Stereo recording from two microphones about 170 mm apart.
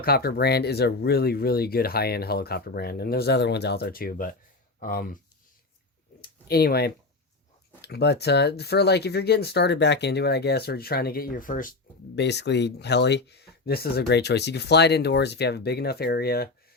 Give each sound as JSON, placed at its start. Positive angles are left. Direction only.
{"t": 0.0, "sound": "speech", "side_deg": 65}
{"t": 6.5, "sound": "speech", "side_deg": 65}
{"t": 12.1, "sound": "speech", "side_deg": 90}